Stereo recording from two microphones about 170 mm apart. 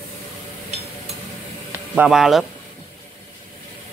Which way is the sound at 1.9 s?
5° right (ahead or behind).